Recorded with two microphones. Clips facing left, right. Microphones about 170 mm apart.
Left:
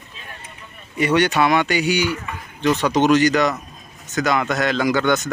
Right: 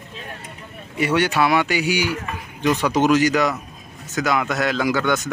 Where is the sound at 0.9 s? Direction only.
5° right (ahead or behind).